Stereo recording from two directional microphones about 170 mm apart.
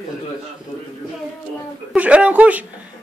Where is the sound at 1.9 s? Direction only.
5° right (ahead or behind).